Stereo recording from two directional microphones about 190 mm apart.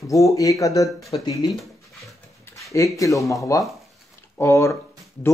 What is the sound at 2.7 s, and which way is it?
Speech, 15° left (ahead or behind).